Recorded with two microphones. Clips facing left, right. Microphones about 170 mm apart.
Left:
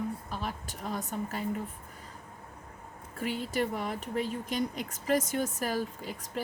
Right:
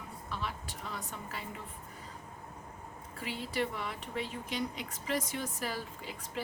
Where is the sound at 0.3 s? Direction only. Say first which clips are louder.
Left 2 dB; 45° left (ahead or behind).